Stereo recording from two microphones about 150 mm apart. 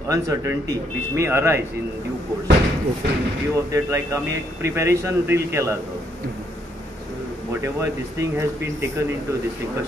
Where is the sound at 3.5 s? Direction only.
20° right (ahead or behind).